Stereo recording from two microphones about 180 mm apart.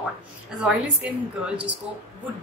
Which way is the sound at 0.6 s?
5° right (ahead or behind).